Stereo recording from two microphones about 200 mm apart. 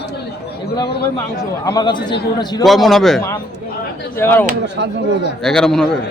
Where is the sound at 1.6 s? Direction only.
20° left (ahead or behind).